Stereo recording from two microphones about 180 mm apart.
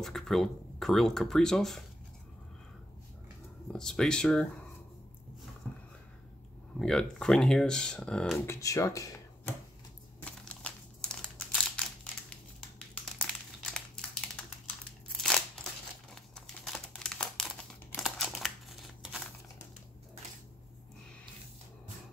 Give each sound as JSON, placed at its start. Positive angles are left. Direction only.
{"t": 0.0, "sound": "speech", "side_deg": 0}
{"t": 3.7, "sound": "speech", "side_deg": 5}
{"t": 6.8, "sound": "speech", "side_deg": 5}
{"t": 8.5, "sound": "speech", "side_deg": 15}
{"t": 10.2, "sound": "crumpling", "side_deg": 5}
{"t": 15.1, "sound": "a sound", "side_deg": 0}
{"t": 16.2, "sound": "crumpling", "side_deg": 0}